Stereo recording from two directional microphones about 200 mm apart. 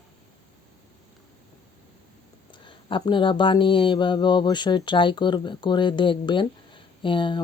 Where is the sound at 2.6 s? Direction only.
25° left (ahead or behind).